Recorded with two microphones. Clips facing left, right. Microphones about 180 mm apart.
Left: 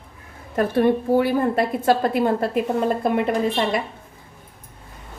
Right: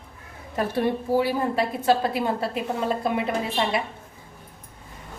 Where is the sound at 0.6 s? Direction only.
55° left (ahead or behind).